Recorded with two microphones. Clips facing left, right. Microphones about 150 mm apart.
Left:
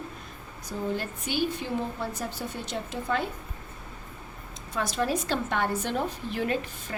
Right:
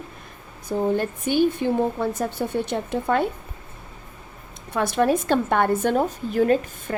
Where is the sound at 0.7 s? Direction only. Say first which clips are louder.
Right 9 dB; 55° right (ahead or behind).